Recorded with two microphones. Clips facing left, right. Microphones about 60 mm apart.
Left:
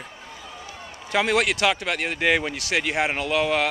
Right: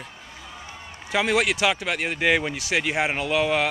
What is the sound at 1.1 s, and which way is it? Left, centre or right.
Speech, centre.